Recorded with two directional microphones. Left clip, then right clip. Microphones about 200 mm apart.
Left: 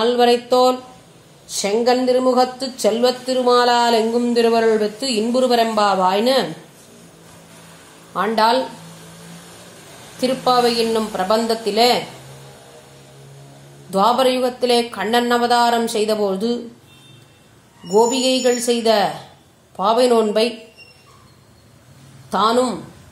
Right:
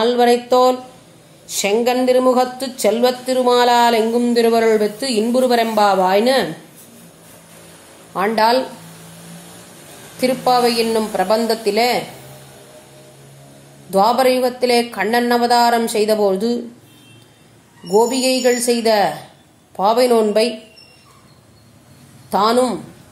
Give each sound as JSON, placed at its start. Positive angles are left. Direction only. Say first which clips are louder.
{"t": 0.0, "sound": "a woman's voice", "louder": "right 1 dB", "side_deg": -5}
{"t": 10.9, "sound": "speech", "louder": "right 2 dB", "side_deg": -5}
{"t": 13.8, "sound": "speech", "louder": "right 2 dB", "side_deg": -5}
{"t": 17.9, "sound": "speech", "louder": "even", "side_deg": -5}
{"t": 22.3, "sound": "speech", "louder": "right 2 dB", "side_deg": 0}